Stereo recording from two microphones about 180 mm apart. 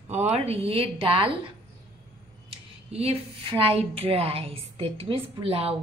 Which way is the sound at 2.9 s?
35° right (ahead or behind).